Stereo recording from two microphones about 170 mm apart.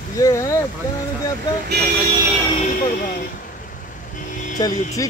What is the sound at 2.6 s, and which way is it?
Speech, 50° left (ahead or behind).